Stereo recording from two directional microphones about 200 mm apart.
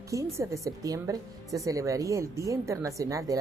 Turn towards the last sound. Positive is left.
turn(degrees=-15)  # may be behind; listen again after turning